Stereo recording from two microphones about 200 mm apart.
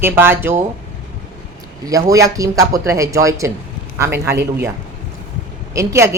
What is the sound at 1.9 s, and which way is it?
A woman's voice, 15° right (ahead or behind).